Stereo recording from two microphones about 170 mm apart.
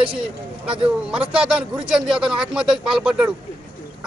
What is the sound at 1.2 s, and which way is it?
Speech, 5° right (ahead or behind).